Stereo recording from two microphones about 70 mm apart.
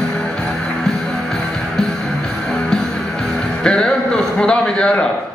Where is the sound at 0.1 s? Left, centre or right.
Centre.